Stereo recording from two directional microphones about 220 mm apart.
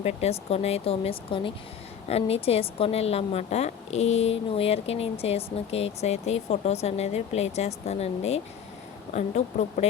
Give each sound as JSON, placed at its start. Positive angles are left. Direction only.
{"t": 0.0, "sound": "a woman's voice", "side_deg": 30}